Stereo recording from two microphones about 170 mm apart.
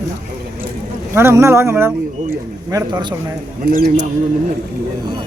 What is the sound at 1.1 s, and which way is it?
Speech, 15° right (ahead or behind).